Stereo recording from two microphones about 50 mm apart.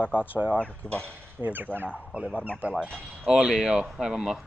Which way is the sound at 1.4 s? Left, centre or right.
Right.